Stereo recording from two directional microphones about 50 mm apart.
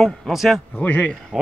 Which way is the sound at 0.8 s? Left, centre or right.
Left.